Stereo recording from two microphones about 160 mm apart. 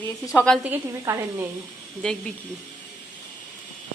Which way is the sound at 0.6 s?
15° right (ahead or behind).